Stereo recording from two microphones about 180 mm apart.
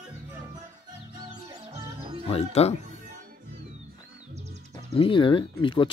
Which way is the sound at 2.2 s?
35° left (ahead or behind).